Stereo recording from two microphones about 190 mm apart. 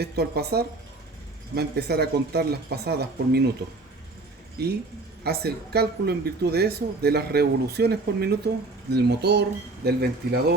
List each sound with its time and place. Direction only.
0.0 s speech: 55° right (ahead or behind)
4.6 s speech: 60° right (ahead or behind)